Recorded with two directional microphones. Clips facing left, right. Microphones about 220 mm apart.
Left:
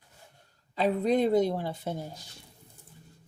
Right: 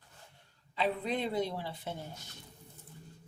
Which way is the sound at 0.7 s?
45° left (ahead or behind).